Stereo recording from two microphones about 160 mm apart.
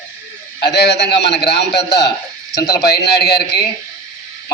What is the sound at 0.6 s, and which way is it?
A man's voice, 90° left.